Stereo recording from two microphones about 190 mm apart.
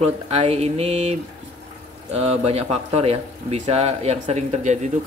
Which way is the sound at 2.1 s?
35° right (ahead or behind).